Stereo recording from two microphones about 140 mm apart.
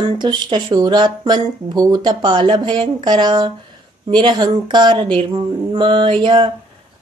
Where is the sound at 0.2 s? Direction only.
30° right (ahead or behind).